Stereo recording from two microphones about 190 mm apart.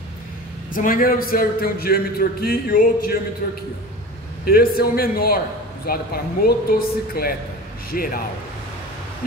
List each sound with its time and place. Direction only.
0.7 s a man's voice: 45° left (ahead or behind)